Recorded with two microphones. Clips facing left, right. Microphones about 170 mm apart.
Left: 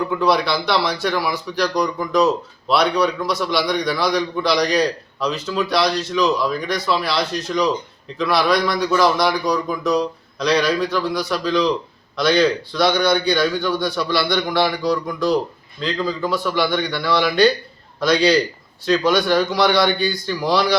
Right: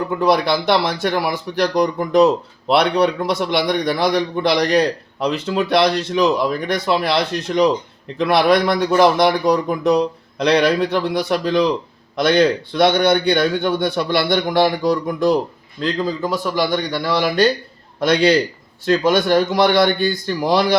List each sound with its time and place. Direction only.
0.1 s a man's voice: 50° right (ahead or behind)
18.0 s a man's voice: 55° right (ahead or behind)